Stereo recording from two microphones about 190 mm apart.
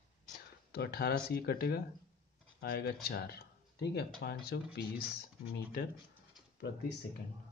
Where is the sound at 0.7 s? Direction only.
55° left (ahead or behind).